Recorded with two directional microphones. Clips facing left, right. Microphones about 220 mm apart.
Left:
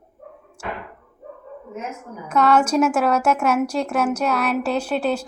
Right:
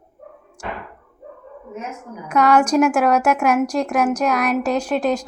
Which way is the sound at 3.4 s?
5° left (ahead or behind).